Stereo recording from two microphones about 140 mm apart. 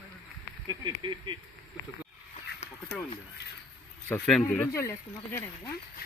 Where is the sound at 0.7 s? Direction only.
30° right (ahead or behind).